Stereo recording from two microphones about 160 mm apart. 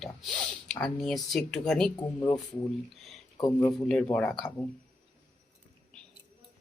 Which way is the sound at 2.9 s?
Centre (ahead or behind).